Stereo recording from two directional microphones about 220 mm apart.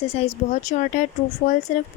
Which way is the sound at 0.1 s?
30° left (ahead or behind).